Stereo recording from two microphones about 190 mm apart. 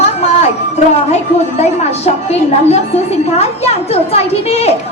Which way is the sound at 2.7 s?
35° left (ahead or behind).